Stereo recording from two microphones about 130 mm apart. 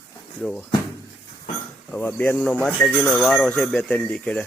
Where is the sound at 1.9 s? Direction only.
10° left (ahead or behind).